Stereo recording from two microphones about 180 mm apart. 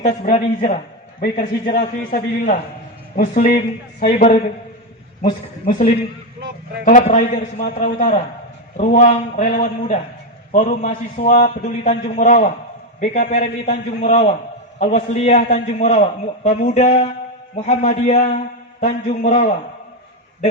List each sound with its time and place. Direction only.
0.0 s a man's voice: 35° left (ahead or behind)
1.2 s a man's voice: 55° left (ahead or behind)
6.8 s a man's voice: 45° left (ahead or behind)